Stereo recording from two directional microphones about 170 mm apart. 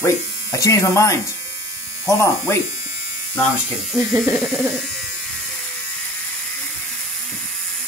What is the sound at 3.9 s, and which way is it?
Speech, centre (ahead or behind).